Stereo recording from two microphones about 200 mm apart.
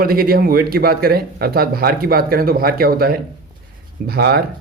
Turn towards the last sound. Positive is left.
turn(degrees=-55)  # may be behind; listen again after turning